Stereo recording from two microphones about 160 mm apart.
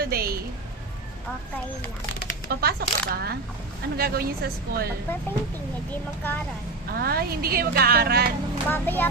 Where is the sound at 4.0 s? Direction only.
70° right (ahead or behind).